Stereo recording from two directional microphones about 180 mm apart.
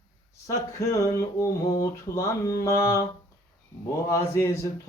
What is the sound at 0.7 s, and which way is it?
Mantra, 20° left (ahead or behind).